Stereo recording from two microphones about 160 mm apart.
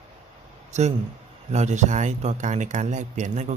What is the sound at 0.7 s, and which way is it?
Speech, 45° right (ahead or behind).